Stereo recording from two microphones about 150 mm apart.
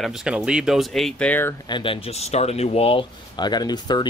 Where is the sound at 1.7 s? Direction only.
35° left (ahead or behind).